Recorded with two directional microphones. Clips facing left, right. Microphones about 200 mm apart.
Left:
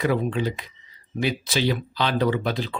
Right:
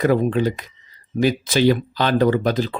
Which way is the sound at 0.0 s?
50° right (ahead or behind).